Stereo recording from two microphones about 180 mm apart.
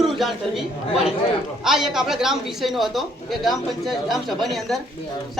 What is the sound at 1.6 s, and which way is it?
Speech, centre (ahead or behind).